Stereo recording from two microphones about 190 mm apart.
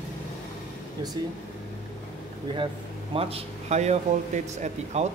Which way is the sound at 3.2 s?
30° right (ahead or behind).